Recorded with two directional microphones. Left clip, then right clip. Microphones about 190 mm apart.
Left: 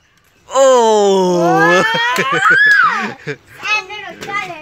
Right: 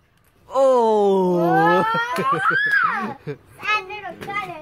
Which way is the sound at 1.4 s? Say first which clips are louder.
Left 5 dB; 40° left (ahead or behind).